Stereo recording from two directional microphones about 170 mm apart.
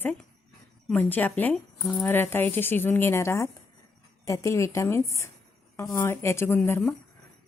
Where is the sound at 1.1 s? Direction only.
10° left (ahead or behind).